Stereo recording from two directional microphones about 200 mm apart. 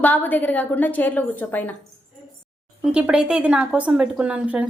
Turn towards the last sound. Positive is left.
turn(degrees=-5)  # may be behind; listen again after turning